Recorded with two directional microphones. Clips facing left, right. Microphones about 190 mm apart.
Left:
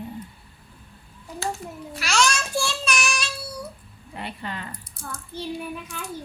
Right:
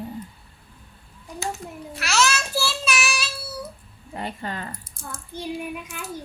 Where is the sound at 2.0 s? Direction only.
5° right (ahead or behind).